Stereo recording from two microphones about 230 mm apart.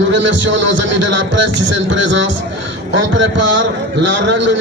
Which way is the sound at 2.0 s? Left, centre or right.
Right.